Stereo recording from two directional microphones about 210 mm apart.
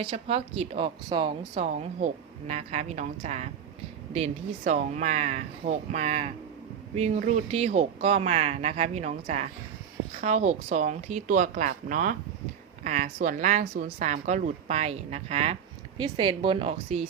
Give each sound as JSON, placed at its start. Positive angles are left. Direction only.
{"t": 0.0, "sound": "speech", "side_deg": -25}